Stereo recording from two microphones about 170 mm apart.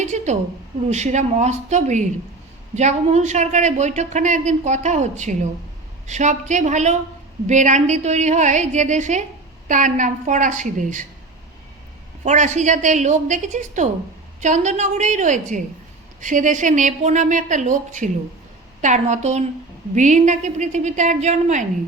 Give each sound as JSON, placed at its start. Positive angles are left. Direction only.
{"t": 0.0, "sound": "a sound", "side_deg": -45}
{"t": 0.9, "sound": "speech", "side_deg": -45}
{"t": 12.2, "sound": "speech", "side_deg": -45}